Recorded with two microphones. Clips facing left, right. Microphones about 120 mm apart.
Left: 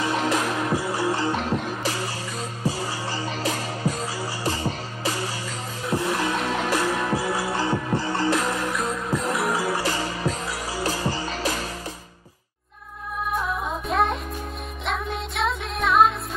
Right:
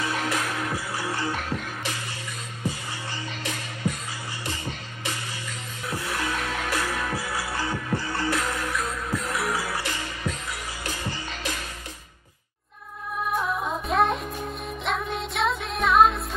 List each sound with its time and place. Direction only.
0.0 s music: 25° left (ahead or behind)
3.1 s music: 35° left (ahead or behind)
5.9 s music: 25° left (ahead or behind)
13.3 s music: centre (ahead or behind)